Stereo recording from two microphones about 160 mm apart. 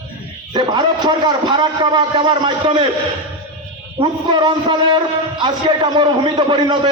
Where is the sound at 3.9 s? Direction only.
30° right (ahead or behind).